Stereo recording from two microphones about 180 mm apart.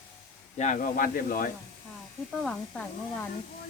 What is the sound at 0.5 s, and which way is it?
Speech, 45° left (ahead or behind).